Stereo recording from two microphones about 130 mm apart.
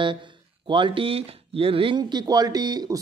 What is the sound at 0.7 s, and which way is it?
Speech, 40° right (ahead or behind).